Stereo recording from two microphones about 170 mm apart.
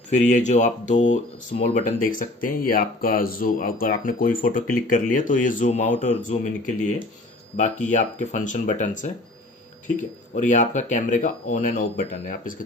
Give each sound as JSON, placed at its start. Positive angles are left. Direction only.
{"t": 0.1, "sound": "speech", "side_deg": 45}